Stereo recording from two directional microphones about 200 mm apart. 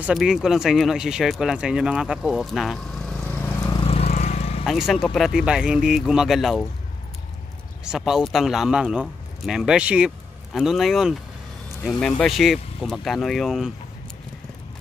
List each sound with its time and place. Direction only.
0.0 s speech: centre (ahead or behind)
3.8 s vehicle: 30° left (ahead or behind)
4.6 s speech: centre (ahead or behind)
7.8 s speech: 5° right (ahead or behind)